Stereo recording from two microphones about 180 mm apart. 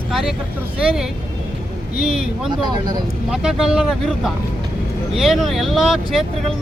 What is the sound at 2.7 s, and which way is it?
Speech, 25° right (ahead or behind).